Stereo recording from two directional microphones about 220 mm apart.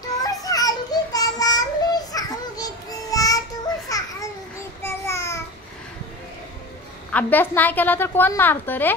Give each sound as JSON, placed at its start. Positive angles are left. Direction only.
{"t": 0.2, "sound": "child singing", "side_deg": 15}
{"t": 3.9, "sound": "babbling", "side_deg": 15}
{"t": 4.8, "sound": "child singing", "side_deg": 10}
{"t": 7.1, "sound": "a woman's voice", "side_deg": 5}